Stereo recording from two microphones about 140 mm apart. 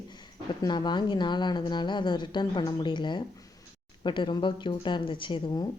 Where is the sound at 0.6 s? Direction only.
30° left (ahead or behind).